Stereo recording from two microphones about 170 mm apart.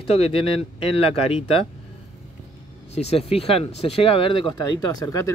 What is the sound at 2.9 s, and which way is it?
Speech, 35° left (ahead or behind).